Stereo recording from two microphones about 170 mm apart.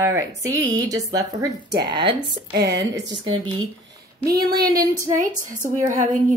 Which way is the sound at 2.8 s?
20° right (ahead or behind).